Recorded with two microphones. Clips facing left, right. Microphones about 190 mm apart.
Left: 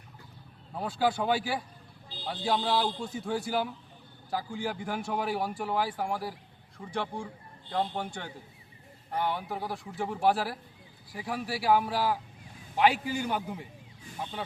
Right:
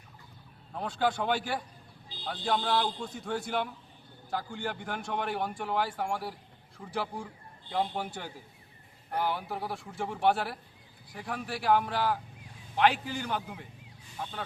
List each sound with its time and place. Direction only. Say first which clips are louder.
0.7 s a man's voice: left 1 dB; 5° left (ahead or behind)